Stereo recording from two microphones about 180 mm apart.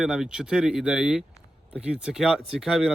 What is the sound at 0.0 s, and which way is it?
Speech, 5° right (ahead or behind).